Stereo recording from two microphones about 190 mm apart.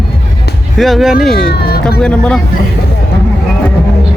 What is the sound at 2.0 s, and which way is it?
Speech, 5° left (ahead or behind).